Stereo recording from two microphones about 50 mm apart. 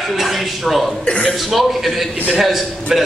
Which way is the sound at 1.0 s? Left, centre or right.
Left.